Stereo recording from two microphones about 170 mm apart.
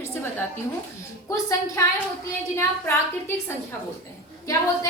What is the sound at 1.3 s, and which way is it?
A woman's voice, 20° left (ahead or behind).